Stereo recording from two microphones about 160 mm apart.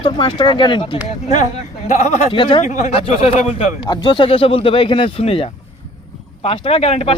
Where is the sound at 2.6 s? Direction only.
50° left (ahead or behind).